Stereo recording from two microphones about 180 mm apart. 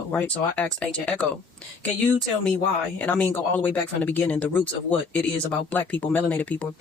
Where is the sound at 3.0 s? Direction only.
10° left (ahead or behind).